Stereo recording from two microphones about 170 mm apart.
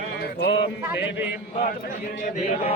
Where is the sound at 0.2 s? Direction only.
75° left (ahead or behind).